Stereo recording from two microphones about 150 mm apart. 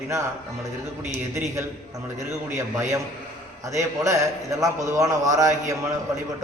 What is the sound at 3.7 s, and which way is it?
A man's voice, 20° right (ahead or behind).